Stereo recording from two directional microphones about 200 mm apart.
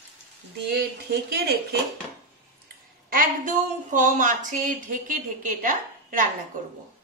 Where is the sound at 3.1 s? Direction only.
45° right (ahead or behind).